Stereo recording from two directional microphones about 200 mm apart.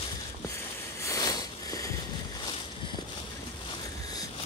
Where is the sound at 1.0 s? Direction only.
20° left (ahead or behind).